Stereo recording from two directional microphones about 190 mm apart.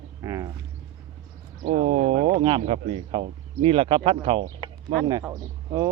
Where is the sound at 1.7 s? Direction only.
35° right (ahead or behind).